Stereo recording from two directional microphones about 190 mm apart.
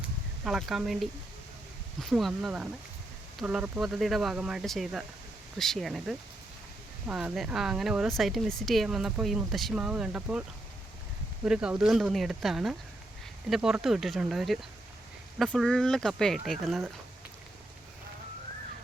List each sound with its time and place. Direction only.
0.4 s speech: centre (ahead or behind)
2.0 s speech: centre (ahead or behind)
11.4 s speech: 5° right (ahead or behind)